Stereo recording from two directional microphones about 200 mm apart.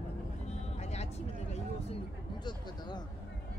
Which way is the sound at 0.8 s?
35° left (ahead or behind).